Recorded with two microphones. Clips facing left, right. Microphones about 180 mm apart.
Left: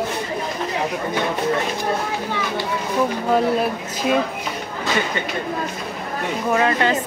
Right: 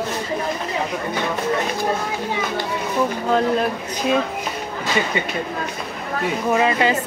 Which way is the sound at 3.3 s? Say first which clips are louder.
Even; 5° left (ahead or behind).